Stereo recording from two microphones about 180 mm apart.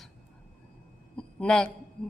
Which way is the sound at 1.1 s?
5° left (ahead or behind).